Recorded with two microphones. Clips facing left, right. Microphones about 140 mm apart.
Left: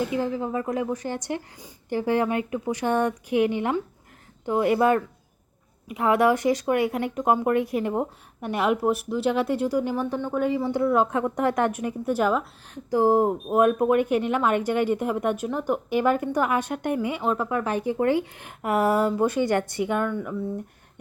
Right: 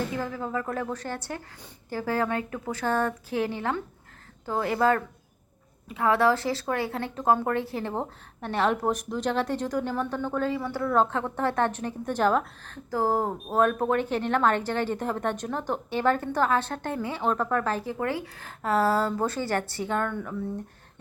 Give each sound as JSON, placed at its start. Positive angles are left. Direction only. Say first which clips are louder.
{"t": 0.0, "sound": "speech", "louder": "left 5 dB", "side_deg": 15}
{"t": 12.7, "sound": "speech", "louder": "left 6 dB", "side_deg": 20}